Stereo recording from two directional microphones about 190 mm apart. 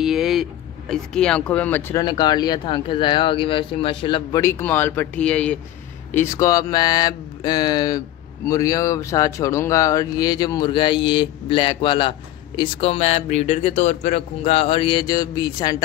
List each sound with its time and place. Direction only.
0.0 s speech: centre (ahead or behind)
2.0 s speech: 20° left (ahead or behind)
4.4 s speech: 15° left (ahead or behind)
6.1 s speech: 15° left (ahead or behind)